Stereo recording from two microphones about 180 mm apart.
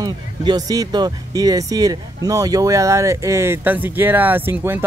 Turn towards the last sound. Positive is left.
turn(degrees=-10)  # may be behind; listen again after turning